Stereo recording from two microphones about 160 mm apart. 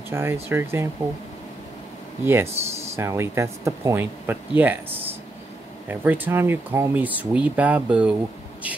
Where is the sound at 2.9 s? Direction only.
15° right (ahead or behind).